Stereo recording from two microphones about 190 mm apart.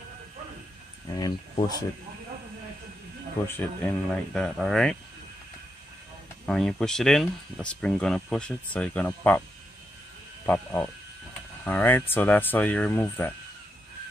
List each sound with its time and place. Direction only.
1.0 s speech: 20° left (ahead or behind)
3.4 s speech: 10° left (ahead or behind)
6.4 s speech: centre (ahead or behind)
10.4 s speech: 10° left (ahead or behind)